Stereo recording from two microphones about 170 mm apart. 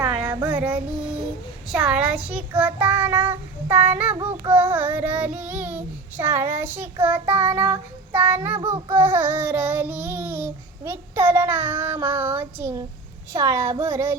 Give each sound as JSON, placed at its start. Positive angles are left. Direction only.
{"t": 0.0, "sound": "child singing", "side_deg": -10}
{"t": 0.4, "sound": "female singing", "side_deg": -10}
{"t": 1.7, "sound": "a child's voice", "side_deg": -5}
{"t": 2.6, "sound": "child singing", "side_deg": -10}